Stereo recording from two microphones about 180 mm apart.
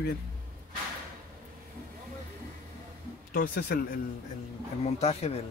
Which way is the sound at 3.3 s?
55° left (ahead or behind).